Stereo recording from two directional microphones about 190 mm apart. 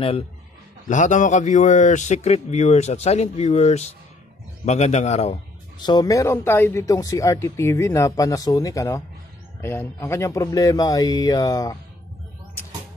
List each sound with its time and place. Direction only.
0.8 s a man's voice: 40° left (ahead or behind)
5.8 s speech: 20° left (ahead or behind)